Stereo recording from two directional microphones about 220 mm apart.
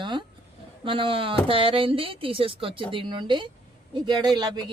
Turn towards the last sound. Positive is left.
turn(degrees=-20)  # may be behind; listen again after turning